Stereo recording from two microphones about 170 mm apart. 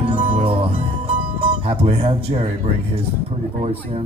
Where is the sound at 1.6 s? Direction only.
35° right (ahead or behind).